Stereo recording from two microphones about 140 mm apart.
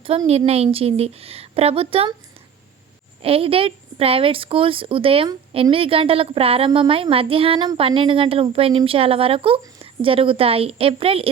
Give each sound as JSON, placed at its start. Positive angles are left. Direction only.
{"t": 0.3, "sound": "a woman's voice", "side_deg": -45}
{"t": 3.2, "sound": "a woman's voice", "side_deg": -40}